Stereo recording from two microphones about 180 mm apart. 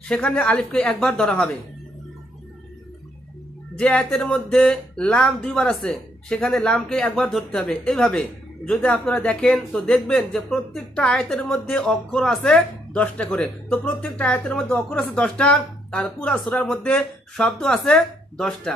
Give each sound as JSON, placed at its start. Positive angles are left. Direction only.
{"t": 0.1, "sound": "speech", "side_deg": 5}
{"t": 3.7, "sound": "speech", "side_deg": 5}